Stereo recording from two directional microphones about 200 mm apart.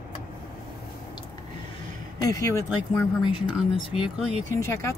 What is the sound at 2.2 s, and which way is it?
Speech, 15° left (ahead or behind).